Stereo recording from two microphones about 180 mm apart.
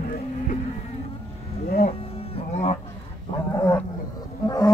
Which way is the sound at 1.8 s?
35° left (ahead or behind).